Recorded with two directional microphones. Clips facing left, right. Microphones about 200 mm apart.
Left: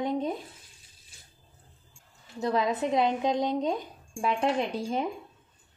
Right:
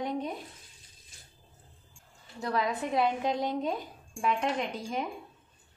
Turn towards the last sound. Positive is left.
turn(degrees=30)  # may be behind; listen again after turning